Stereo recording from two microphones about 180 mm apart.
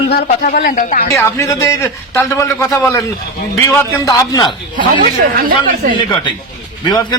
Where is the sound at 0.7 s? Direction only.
50° left (ahead or behind).